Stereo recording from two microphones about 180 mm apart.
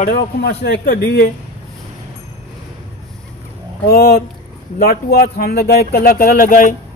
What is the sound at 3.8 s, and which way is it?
Speech, 60° left (ahead or behind).